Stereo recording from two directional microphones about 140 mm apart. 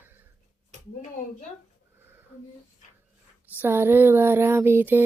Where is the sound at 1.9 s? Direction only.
15° right (ahead or behind).